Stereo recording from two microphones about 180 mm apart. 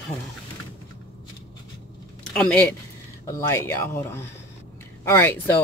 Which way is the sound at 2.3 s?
5° left (ahead or behind).